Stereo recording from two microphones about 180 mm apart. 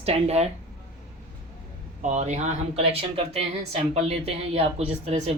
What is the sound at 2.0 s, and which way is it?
Speech, 40° right (ahead or behind).